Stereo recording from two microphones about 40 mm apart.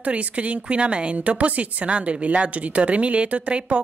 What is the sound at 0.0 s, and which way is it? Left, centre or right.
Speech, right.